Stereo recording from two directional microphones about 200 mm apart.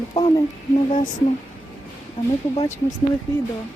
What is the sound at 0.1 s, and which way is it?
Speech, 20° left (ahead or behind).